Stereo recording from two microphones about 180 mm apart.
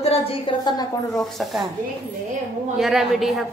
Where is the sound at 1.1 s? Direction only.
Centre (ahead or behind).